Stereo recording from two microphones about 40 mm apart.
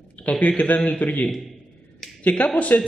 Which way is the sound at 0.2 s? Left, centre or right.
Left.